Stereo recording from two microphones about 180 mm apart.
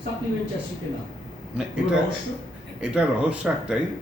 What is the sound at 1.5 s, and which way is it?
Speech, 5° right (ahead or behind).